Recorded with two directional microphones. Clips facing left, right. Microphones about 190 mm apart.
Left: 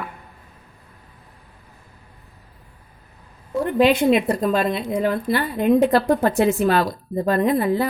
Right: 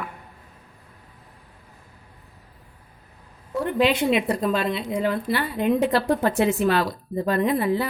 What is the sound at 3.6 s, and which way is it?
Speech, 45° left (ahead or behind).